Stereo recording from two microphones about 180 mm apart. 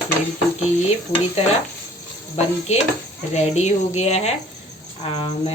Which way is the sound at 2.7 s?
40° left (ahead or behind).